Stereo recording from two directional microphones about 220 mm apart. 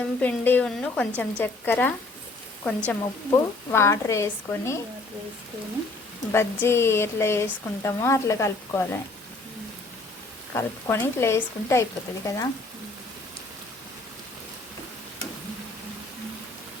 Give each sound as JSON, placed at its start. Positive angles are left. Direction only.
{"t": 0.2, "sound": "speech", "side_deg": 10}
{"t": 6.3, "sound": "speech", "side_deg": 10}
{"t": 10.5, "sound": "speech", "side_deg": 10}